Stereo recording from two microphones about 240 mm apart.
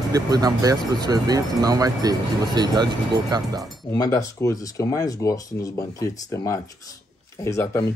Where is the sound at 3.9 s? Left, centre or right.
Centre.